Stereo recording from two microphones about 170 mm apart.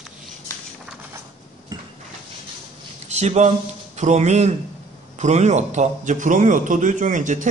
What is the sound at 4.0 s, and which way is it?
A man's voice, 40° right (ahead or behind).